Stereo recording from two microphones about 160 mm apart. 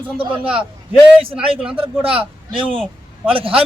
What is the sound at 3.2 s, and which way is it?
Speech, 35° right (ahead or behind).